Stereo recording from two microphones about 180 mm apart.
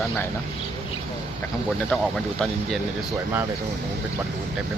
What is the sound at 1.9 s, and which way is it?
Speech, centre (ahead or behind).